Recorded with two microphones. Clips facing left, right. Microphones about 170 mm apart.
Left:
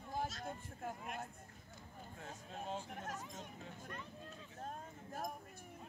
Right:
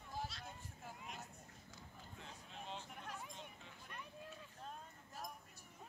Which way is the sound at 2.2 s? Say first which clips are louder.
Left 7 dB; 45° left (ahead or behind).